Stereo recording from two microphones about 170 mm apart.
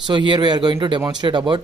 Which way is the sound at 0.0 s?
30° right (ahead or behind).